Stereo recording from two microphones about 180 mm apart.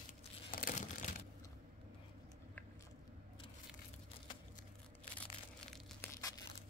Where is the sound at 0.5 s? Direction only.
50° left (ahead or behind).